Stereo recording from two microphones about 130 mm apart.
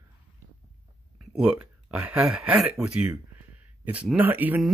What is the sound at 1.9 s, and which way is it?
Speech, 10° right (ahead or behind).